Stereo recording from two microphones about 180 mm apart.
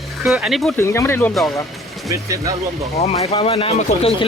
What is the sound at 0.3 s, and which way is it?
Speech, 5° right (ahead or behind).